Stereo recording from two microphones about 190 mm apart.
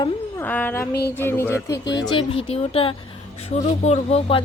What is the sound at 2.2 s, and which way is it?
A woman's voice, 30° left (ahead or behind).